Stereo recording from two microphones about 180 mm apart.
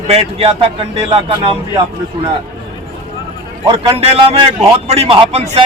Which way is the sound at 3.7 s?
30° right (ahead or behind).